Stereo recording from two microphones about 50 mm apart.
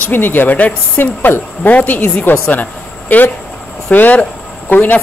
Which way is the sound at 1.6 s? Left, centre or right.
Left.